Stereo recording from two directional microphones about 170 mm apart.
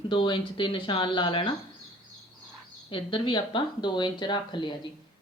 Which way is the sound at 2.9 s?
30° left (ahead or behind).